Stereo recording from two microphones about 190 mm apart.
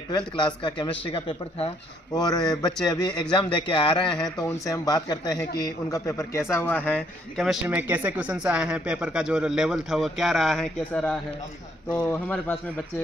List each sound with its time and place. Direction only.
0.1 s a man's voice: 25° left (ahead or behind); by 7.5 s 5° left (ahead or behind)
7.6 s a man's voice: 10° right (ahead or behind); by 12.8 s 5° left (ahead or behind)